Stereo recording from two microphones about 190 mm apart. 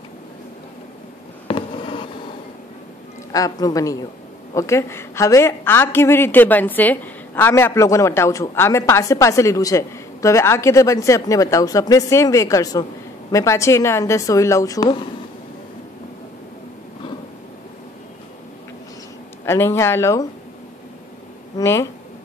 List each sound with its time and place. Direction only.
1.5 s fireworks: 25° left (ahead or behind)
3.3 s a woman's voice: 20° left (ahead or behind)
19.4 s a woman's voice: 15° left (ahead or behind)
21.5 s a woman's voice: 15° left (ahead or behind)